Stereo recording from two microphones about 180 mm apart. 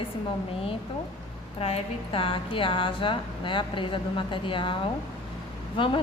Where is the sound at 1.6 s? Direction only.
35° left (ahead or behind).